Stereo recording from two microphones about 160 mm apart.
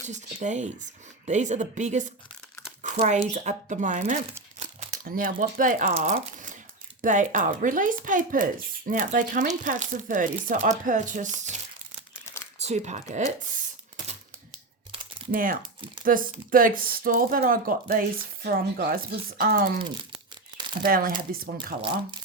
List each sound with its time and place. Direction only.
0.4 s speech: 50° right (ahead or behind)
5.9 s speech: 45° right (ahead or behind)
12.1 s crumpling: 15° left (ahead or behind)
12.5 s speech: 45° right (ahead or behind)
15.3 s speech: 60° right (ahead or behind)
18.4 s speech: 80° right
19.4 s speech: 65° right (ahead or behind)
20.8 s speech: 60° right (ahead or behind)
21.8 s speech: 30° right (ahead or behind)